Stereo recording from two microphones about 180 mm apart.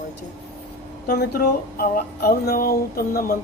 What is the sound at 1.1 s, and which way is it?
Speech, 60° left (ahead or behind).